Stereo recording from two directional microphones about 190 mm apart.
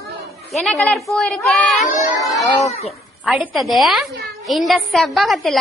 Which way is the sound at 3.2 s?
5° right (ahead or behind).